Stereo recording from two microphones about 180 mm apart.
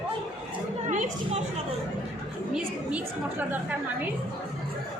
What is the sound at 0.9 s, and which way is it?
Speech, 40° right (ahead or behind).